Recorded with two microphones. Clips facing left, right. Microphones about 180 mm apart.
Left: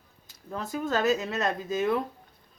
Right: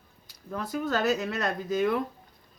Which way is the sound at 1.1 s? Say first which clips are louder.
Left 1 dB; 20° left (ahead or behind).